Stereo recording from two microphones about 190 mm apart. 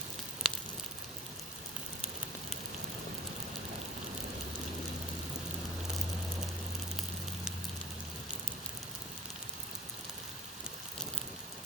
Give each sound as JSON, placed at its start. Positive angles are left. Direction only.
{"t": 0.4, "sound": "sizzle", "side_deg": 0}